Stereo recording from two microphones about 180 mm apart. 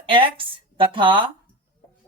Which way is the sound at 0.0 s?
30° right (ahead or behind).